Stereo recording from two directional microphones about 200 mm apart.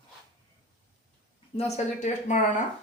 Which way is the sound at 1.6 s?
35° left (ahead or behind).